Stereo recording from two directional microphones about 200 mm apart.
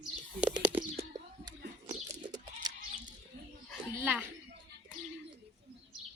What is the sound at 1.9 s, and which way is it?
Goat, 30° right (ahead or behind).